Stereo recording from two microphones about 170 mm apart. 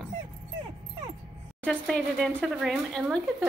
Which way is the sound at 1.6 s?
5° left (ahead or behind).